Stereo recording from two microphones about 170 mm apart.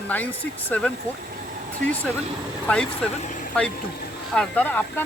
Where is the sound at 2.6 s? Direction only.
5° left (ahead or behind).